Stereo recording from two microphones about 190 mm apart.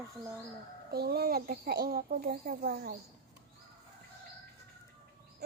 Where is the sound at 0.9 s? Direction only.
55° right (ahead or behind).